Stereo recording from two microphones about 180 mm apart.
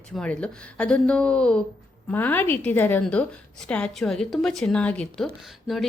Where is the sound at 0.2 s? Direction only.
5° left (ahead or behind).